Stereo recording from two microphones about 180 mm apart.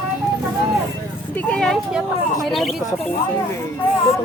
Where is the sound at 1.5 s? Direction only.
5° left (ahead or behind).